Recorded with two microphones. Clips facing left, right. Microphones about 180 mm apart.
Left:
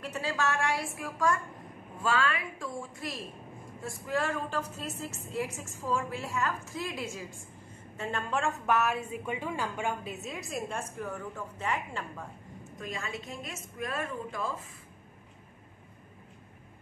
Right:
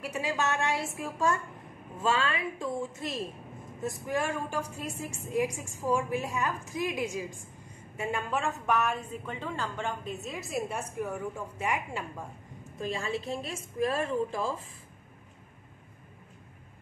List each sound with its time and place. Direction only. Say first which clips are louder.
0.0 s a woman's voice: right 1 dB; 15° right (ahead or behind)
12.7 s a woman's voice: right 6 dB; 30° right (ahead or behind)